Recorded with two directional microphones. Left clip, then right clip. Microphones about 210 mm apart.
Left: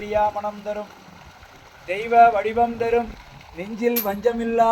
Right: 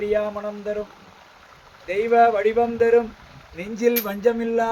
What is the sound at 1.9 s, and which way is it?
Speech, 10° right (ahead or behind).